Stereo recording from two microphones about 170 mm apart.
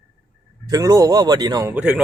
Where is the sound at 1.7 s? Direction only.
10° right (ahead or behind).